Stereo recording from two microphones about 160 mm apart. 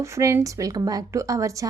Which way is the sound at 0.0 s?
20° right (ahead or behind).